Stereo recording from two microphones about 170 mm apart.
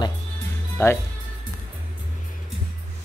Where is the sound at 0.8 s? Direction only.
15° left (ahead or behind).